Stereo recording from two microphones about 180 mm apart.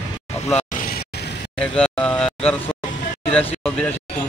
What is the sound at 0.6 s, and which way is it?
Vehicle, 45° left (ahead or behind).